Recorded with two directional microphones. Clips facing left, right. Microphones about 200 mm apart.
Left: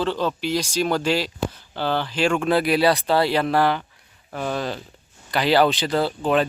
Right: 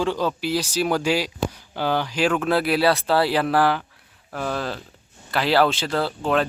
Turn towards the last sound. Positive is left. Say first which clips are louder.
# left 2 dB
turn(degrees=0)  # may be behind; listen again after turning